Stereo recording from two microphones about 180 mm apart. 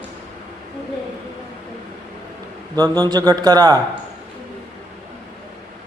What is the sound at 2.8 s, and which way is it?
Speech, 20° right (ahead or behind).